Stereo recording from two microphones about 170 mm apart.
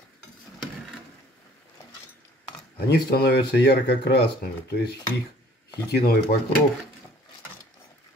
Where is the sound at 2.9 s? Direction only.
70° left (ahead or behind).